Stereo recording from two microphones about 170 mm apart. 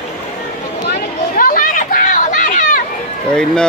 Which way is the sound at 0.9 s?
55° left (ahead or behind).